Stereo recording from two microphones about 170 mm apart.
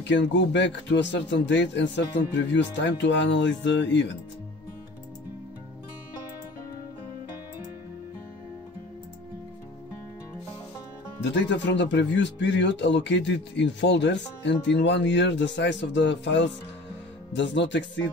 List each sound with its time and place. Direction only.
0.0 s speech: 90° left
11.1 s speech: 90° left